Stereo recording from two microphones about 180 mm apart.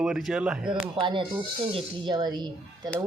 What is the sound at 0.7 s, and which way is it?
Speech, 25° right (ahead or behind).